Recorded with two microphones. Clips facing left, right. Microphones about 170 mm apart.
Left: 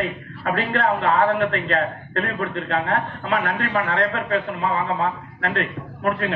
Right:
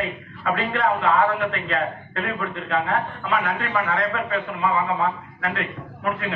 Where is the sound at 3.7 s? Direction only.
65° left (ahead or behind).